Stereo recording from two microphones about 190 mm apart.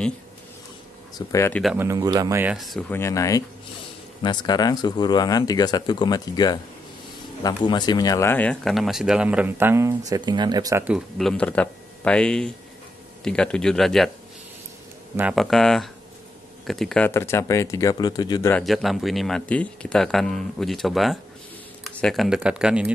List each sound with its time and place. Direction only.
1.1 s speech: 15° left (ahead or behind)
1.5 s speech: centre (ahead or behind)
1.8 s speech: 15° right (ahead or behind)
2.5 s speech: centre (ahead or behind)
2.9 s speech: 15° left (ahead or behind); by 10.9 s 15° right (ahead or behind)
10.9 s speech: centre (ahead or behind)
15.1 s speech: 5° right (ahead or behind); by 18.5 s 20° left (ahead or behind)
18.5 s speech: centre (ahead or behind)